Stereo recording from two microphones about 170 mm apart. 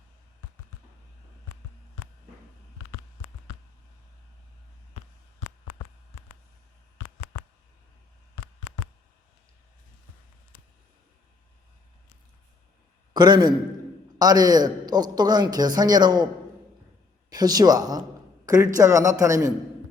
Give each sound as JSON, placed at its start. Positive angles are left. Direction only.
{"t": 13.1, "sound": "a man's voice", "side_deg": -25}